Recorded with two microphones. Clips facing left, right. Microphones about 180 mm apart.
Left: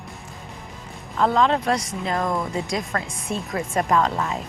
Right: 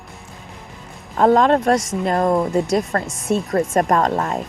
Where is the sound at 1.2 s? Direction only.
45° right (ahead or behind).